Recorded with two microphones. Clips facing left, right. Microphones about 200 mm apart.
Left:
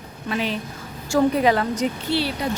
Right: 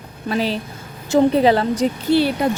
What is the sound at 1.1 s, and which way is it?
Speech, 25° right (ahead or behind).